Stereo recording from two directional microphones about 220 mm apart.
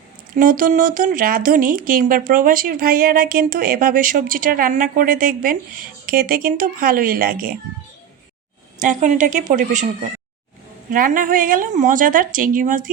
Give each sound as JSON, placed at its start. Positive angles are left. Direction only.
{"t": 0.3, "sound": "speech", "side_deg": -40}
{"t": 8.8, "sound": "speech", "side_deg": -35}